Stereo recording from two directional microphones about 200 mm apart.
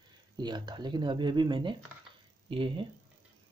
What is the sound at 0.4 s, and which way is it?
Speech, 20° right (ahead or behind).